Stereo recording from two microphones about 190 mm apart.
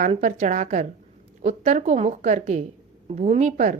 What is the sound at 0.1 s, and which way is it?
Speech, 40° right (ahead or behind).